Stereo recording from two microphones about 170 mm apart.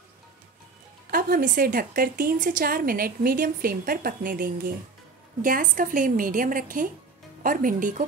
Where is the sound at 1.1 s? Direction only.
55° right (ahead or behind).